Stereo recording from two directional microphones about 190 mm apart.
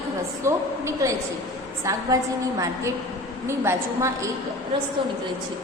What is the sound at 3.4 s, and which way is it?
Speech, 15° right (ahead or behind).